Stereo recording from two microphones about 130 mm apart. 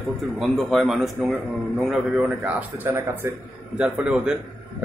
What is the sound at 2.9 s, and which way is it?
Speech, 20° right (ahead or behind).